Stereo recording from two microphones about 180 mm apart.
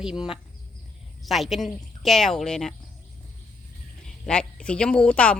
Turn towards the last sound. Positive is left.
turn(degrees=5)  # may be behind; listen again after turning